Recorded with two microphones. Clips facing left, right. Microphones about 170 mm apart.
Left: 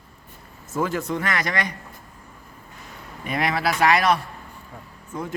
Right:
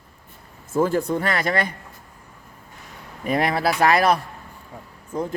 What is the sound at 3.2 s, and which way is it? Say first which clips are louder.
A man's voice: right 3 dB; 35° right (ahead or behind).